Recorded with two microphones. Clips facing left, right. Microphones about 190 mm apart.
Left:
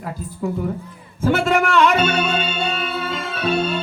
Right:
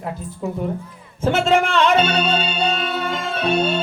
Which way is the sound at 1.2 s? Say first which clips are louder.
Right 1 dB; 25° right (ahead or behind).